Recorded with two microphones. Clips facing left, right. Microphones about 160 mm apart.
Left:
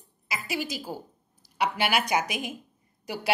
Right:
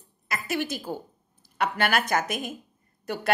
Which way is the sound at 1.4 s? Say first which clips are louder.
Right 1 dB; 50° right (ahead or behind).